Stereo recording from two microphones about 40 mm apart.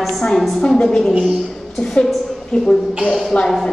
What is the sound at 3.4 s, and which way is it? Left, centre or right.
Speech, centre.